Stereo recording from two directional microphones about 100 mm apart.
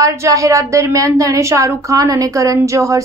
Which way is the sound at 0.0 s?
30° right (ahead or behind).